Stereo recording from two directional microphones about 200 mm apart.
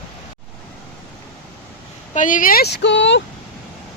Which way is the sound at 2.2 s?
40° left (ahead or behind).